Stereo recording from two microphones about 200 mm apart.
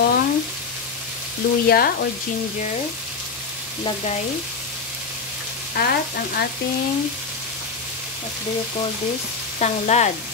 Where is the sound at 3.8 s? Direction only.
35° left (ahead or behind).